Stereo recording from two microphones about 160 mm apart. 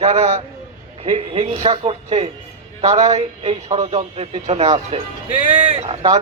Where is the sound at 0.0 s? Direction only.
40° right (ahead or behind).